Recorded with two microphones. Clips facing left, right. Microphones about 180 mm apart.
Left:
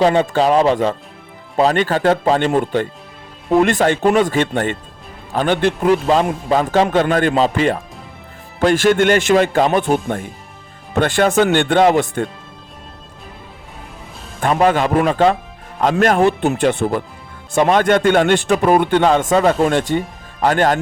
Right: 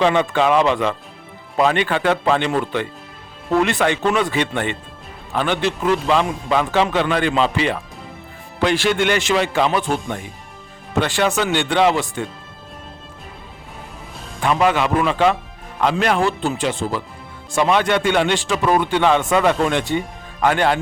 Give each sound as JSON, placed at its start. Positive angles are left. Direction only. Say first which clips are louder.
{"t": 0.0, "sound": "a man's voice", "louder": "left 3 dB", "side_deg": 35}
{"t": 14.4, "sound": "a man's voice", "louder": "left 3 dB", "side_deg": 45}
{"t": 16.4, "sound": "speech", "louder": "left 5 dB", "side_deg": 60}
{"t": 17.5, "sound": "a man's voice", "louder": "left 4 dB", "side_deg": 45}